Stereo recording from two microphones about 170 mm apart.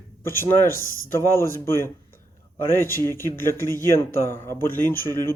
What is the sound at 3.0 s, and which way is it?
Speech, 15° left (ahead or behind).